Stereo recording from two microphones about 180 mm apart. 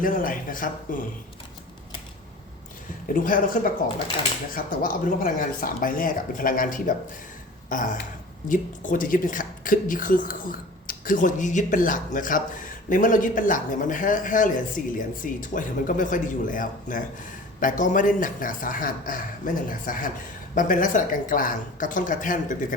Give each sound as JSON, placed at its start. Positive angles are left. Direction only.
{"t": 0.0, "sound": "a woman's voice", "side_deg": 50}
{"t": 3.1, "sound": "a woman's voice", "side_deg": 50}